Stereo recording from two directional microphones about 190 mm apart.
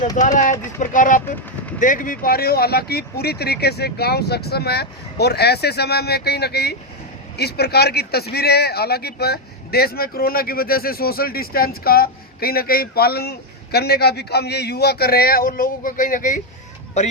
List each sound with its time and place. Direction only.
0.2 s speech: 40° left (ahead or behind)